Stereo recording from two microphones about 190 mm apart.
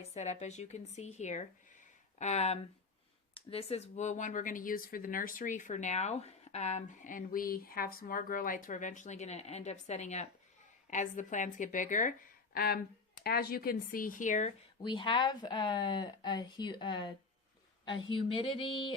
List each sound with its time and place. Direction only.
0.1 s a woman's voice: 35° left (ahead or behind)
12.5 s a woman's voice: 55° left (ahead or behind)
14.8 s speech: 25° left (ahead or behind)